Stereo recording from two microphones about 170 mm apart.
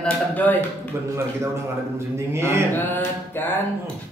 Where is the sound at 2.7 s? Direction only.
10° left (ahead or behind).